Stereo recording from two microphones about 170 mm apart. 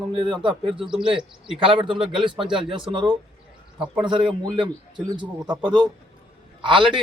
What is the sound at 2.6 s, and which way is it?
Speech, 30° right (ahead or behind).